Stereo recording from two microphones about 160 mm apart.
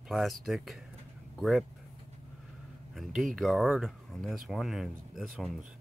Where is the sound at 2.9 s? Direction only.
Centre (ahead or behind).